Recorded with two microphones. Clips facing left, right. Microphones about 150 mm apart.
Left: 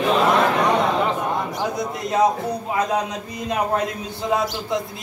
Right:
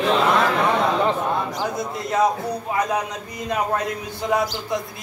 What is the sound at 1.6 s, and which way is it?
A man's voice, 20° left (ahead or behind).